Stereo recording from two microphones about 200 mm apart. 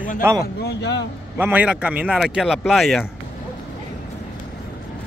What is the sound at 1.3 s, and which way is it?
A man's voice, 10° right (ahead or behind).